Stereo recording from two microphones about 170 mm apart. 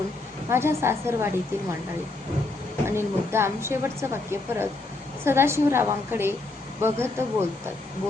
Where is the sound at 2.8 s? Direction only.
15° right (ahead or behind).